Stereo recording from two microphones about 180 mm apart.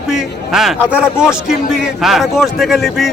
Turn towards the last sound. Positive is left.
turn(degrees=0)  # may be behind; listen again after turning